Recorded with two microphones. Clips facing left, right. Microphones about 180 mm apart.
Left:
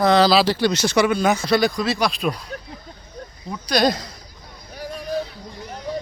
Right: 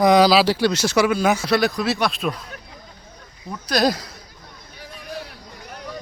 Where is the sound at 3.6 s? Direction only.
5° right (ahead or behind).